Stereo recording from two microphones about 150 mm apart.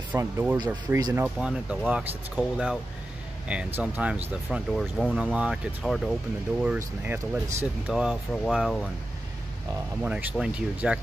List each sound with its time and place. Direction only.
0.2 s speech: 15° right (ahead or behind)
1.2 s speech: 5° right (ahead or behind)
7.1 s speech: 15° right (ahead or behind)
7.9 s speech: centre (ahead or behind)
10.0 s speech: 10° right (ahead or behind)